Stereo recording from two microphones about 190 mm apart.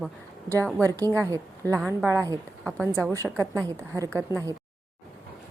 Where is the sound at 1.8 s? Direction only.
5° left (ahead or behind).